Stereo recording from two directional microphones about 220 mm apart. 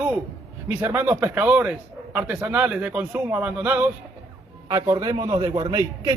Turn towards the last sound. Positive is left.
turn(degrees=-20)  # may be behind; listen again after turning